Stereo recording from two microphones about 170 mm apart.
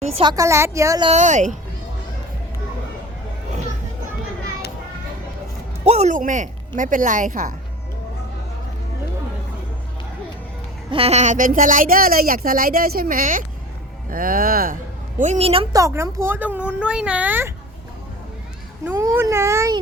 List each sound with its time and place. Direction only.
0.0 s speech: 30° right (ahead or behind)
0.3 s speech: 15° right (ahead or behind)
1.0 s speech: 45° right (ahead or behind)
5.8 s speech: 40° right (ahead or behind)
10.9 s speech: 40° right (ahead or behind); by 14.8 s 55° right (ahead or behind)
15.2 s a woman's voice: 40° right (ahead or behind)
15.7 s speech: 15° right (ahead or behind)
18.9 s speech: 15° right (ahead or behind)